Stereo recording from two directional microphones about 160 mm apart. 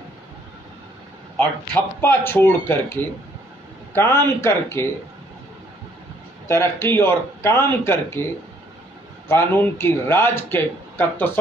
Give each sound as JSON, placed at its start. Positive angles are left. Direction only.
{"t": 1.3, "sound": "speech", "side_deg": 5}
{"t": 6.4, "sound": "speech", "side_deg": 15}
{"t": 9.3, "sound": "speech", "side_deg": 15}